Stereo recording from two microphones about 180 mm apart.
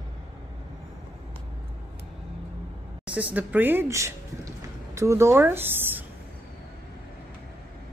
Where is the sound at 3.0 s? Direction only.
10° right (ahead or behind).